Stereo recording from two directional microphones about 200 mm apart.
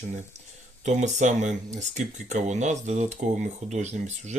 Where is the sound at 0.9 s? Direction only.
35° right (ahead or behind).